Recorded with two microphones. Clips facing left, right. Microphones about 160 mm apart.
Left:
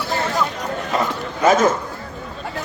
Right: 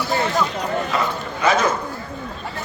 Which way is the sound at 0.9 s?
45° left (ahead or behind).